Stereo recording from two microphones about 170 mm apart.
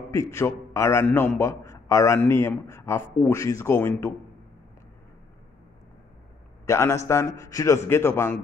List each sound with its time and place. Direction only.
0.1 s a man's voice: 15° left (ahead or behind)
6.6 s a man's voice: 15° left (ahead or behind)